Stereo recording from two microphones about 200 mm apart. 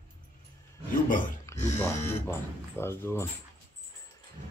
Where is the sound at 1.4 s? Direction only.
10° left (ahead or behind).